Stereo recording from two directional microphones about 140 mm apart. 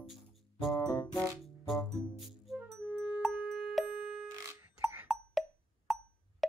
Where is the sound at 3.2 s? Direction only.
Centre (ahead or behind).